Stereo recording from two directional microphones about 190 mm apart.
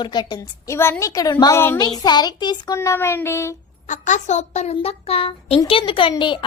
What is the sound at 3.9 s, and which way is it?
A child's voice, 40° left (ahead or behind).